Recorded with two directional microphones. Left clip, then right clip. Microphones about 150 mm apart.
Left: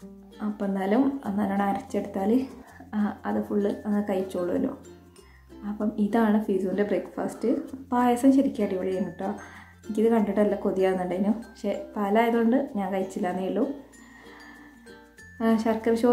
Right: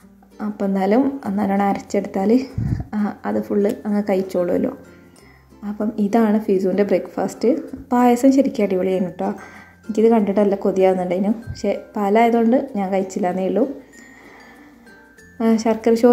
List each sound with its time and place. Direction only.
0.4 s a woman's voice: 35° right (ahead or behind)
6.0 s a woman's voice: 25° right (ahead or behind)
15.3 s a woman's voice: 25° right (ahead or behind)